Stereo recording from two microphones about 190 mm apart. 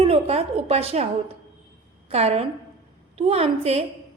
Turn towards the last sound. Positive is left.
turn(degrees=-30)  # may be behind; listen again after turning